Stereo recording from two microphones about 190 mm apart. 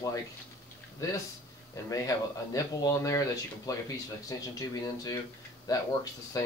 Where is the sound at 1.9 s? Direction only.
20° left (ahead or behind).